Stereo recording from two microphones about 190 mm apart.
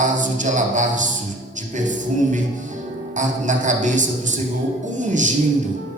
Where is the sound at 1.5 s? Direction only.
40° right (ahead or behind).